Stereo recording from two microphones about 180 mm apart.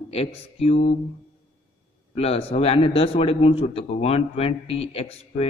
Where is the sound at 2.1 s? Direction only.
35° left (ahead or behind).